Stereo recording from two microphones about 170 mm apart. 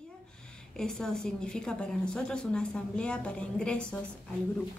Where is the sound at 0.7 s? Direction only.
5° left (ahead or behind).